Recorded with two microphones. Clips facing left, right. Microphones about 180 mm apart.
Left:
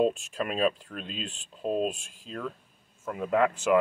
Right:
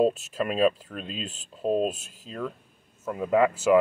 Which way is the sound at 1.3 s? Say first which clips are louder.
Right 3 dB; 40° right (ahead or behind).